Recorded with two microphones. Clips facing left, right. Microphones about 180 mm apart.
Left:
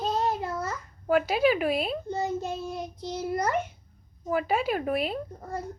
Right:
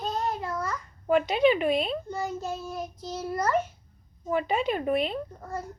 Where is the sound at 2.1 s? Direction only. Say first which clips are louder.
Left 2 dB; 20° left (ahead or behind).